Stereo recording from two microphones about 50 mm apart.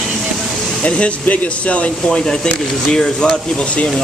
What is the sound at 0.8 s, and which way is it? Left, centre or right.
Speech, left.